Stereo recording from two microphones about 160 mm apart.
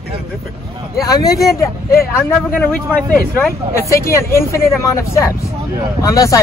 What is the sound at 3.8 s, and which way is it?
Speech, 15° left (ahead or behind).